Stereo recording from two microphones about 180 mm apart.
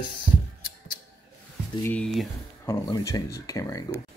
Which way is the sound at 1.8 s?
5° left (ahead or behind).